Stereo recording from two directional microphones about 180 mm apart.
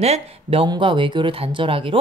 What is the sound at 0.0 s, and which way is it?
A woman's voice, 35° right (ahead or behind).